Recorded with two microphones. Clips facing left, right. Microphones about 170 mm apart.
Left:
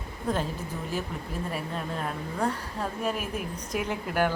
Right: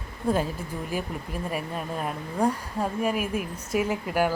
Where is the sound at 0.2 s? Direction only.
10° right (ahead or behind).